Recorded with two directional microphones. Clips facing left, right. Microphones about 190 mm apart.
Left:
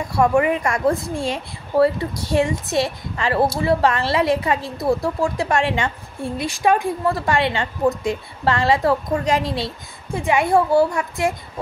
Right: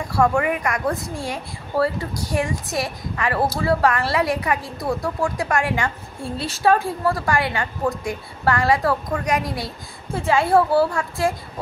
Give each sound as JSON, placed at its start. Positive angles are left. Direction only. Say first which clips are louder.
{"t": 0.1, "sound": "speech", "louder": "left 2 dB", "side_deg": 20}
{"t": 6.3, "sound": "a woman's voice", "louder": "even", "side_deg": 15}